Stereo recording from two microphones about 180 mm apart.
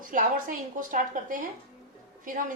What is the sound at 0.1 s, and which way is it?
A woman's voice, 50° right (ahead or behind).